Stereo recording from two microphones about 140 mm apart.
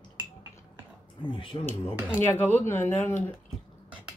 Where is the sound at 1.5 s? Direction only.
35° left (ahead or behind).